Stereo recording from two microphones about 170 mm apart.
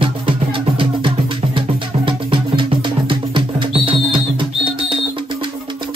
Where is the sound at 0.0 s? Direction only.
30° right (ahead or behind).